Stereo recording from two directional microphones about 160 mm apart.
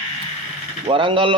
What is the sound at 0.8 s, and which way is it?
Speech, 30° right (ahead or behind).